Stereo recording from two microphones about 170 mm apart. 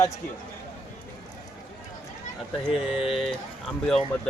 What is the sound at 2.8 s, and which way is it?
Speech, 35° left (ahead or behind).